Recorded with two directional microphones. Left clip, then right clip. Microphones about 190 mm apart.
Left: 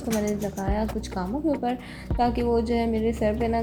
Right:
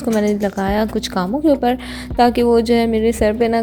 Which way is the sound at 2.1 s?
45° right (ahead or behind).